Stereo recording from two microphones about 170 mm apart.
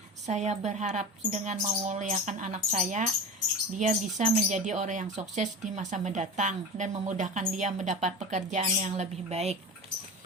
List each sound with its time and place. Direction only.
0.3 s speech: 40° right (ahead or behind)